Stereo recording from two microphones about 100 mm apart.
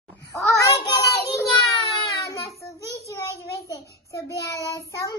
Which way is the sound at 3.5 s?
30° right (ahead or behind).